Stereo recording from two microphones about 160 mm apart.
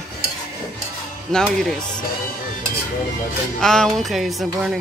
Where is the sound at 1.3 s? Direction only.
5° left (ahead or behind).